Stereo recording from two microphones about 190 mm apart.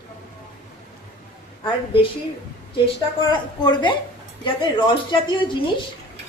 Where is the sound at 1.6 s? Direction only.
25° left (ahead or behind).